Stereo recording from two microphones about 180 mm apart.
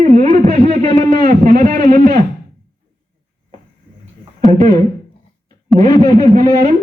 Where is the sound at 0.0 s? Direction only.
40° right (ahead or behind).